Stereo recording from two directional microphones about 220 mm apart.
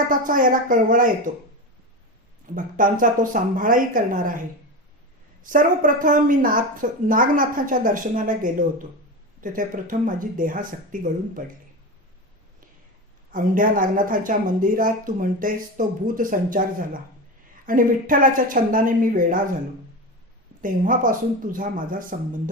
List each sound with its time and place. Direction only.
0.1 s a woman's voice: 40° right (ahead or behind)
2.7 s a woman's voice: 40° right (ahead or behind)
5.4 s a woman's voice: 35° right (ahead or behind)
13.3 s a woman's voice: 40° right (ahead or behind)
20.6 s a woman's voice: 40° right (ahead or behind)